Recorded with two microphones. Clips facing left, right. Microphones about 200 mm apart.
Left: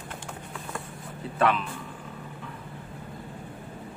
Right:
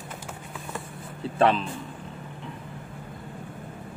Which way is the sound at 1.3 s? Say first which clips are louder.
Right 3 dB; 30° right (ahead or behind).